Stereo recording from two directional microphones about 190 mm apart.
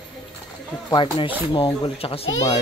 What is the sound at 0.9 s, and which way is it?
Speech, 25° left (ahead or behind).